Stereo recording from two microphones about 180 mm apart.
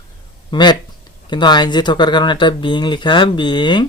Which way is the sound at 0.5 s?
25° left (ahead or behind).